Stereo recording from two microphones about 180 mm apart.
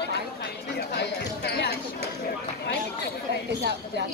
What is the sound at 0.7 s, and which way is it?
Basketball bounce, 70° left (ahead or behind).